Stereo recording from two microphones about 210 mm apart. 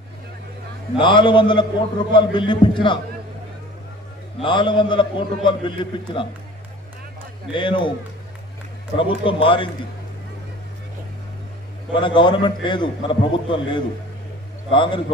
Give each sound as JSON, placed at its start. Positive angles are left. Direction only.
{"t": 0.9, "sound": "a man's voice", "side_deg": 25}
{"t": 4.4, "sound": "a man's voice", "side_deg": 25}
{"t": 7.5, "sound": "a man's voice", "side_deg": 25}
{"t": 8.9, "sound": "a man's voice", "side_deg": 25}
{"t": 11.9, "sound": "a man's voice", "side_deg": 25}